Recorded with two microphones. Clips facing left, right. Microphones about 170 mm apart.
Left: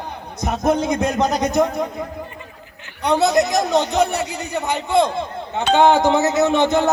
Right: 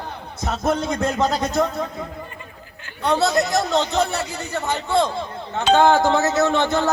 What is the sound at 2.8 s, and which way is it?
A man's voice, 15° left (ahead or behind).